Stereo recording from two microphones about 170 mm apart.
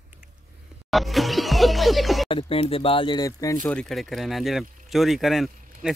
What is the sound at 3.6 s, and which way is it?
Speech, 5° left (ahead or behind).